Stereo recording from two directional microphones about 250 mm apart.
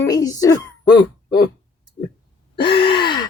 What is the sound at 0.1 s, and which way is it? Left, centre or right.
Speech, centre.